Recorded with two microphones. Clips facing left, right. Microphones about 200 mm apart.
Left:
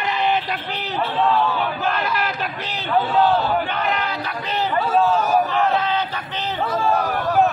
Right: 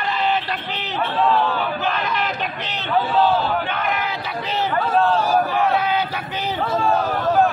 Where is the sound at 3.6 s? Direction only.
5° right (ahead or behind).